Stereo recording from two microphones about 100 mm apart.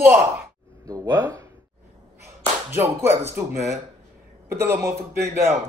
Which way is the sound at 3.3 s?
30° right (ahead or behind).